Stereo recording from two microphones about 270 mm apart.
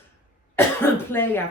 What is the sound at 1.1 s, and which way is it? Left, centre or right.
Speech, centre.